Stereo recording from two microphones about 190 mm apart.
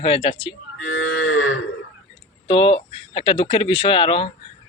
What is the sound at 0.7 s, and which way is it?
Cattle, 90° left.